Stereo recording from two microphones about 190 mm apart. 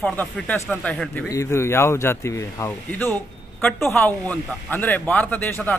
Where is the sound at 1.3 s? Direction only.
15° left (ahead or behind).